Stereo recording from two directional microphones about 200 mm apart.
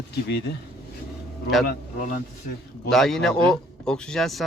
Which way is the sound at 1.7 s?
45° left (ahead or behind).